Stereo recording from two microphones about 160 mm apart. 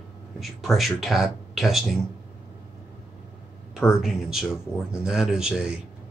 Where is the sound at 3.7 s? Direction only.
Centre (ahead or behind).